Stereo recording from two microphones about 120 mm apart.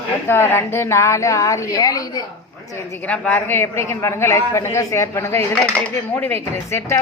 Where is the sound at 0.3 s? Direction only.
20° left (ahead or behind).